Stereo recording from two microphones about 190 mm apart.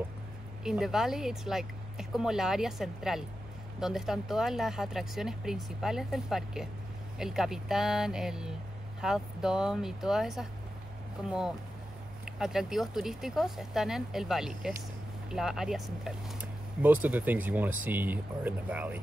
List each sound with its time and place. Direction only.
0.7 s speech: centre (ahead or behind)